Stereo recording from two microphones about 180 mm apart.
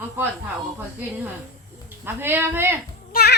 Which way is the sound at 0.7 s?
10° right (ahead or behind).